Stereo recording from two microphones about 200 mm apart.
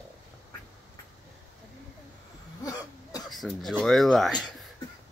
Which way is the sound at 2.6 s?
20° left (ahead or behind).